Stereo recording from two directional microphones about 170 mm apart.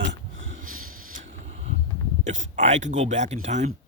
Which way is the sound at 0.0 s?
90° right.